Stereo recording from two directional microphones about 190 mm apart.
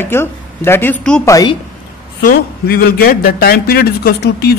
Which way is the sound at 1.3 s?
20° left (ahead or behind).